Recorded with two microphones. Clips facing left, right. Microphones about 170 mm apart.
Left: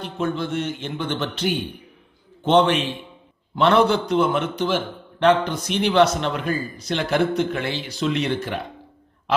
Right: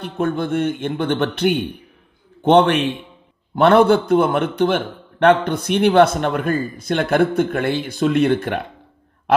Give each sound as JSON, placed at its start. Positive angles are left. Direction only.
{"t": 0.0, "sound": "a man's voice", "side_deg": -55}